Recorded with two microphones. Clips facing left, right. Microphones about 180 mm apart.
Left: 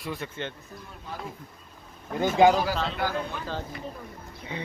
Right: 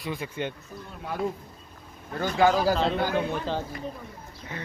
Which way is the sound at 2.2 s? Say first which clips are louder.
Left 3 dB; 20° left (ahead or behind).